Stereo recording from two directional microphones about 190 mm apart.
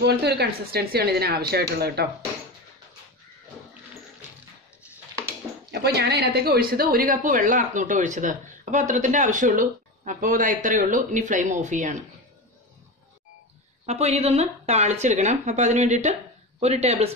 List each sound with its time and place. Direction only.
0.0 s speech: 60° right (ahead or behind)
5.2 s speech: 60° right (ahead or behind); by 12.0 s 40° right (ahead or behind)
13.8 s speech: 35° right (ahead or behind)